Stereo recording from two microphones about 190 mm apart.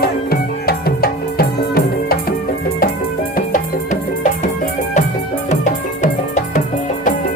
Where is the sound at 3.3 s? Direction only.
45° left (ahead or behind).